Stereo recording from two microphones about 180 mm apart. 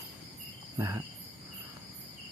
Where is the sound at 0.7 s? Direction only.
15° right (ahead or behind).